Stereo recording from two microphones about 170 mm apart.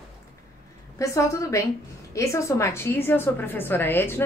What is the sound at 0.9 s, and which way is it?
A woman's voice, 15° left (ahead or behind).